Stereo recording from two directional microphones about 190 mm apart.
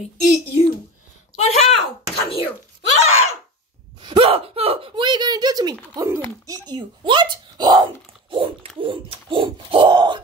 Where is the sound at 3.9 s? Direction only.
25° right (ahead or behind).